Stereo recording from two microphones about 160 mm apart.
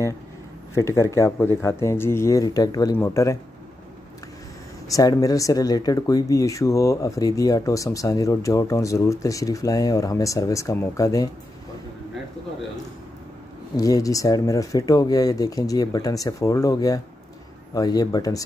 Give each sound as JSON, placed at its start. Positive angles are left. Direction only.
{"t": 0.7, "sound": "speech", "side_deg": 15}
{"t": 4.9, "sound": "speech", "side_deg": 20}
{"t": 13.7, "sound": "speech", "side_deg": 20}